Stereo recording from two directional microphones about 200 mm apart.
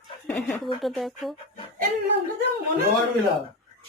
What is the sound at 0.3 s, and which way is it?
A woman's voice, centre (ahead or behind).